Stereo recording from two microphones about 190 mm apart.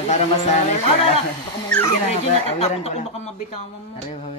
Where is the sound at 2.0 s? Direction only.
35° left (ahead or behind).